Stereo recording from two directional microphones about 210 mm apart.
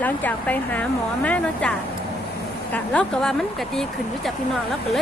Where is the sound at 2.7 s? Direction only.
5° left (ahead or behind).